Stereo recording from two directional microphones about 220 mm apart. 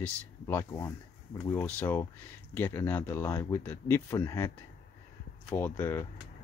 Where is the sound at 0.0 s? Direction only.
10° left (ahead or behind).